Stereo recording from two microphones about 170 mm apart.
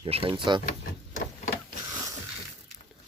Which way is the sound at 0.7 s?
50° left (ahead or behind).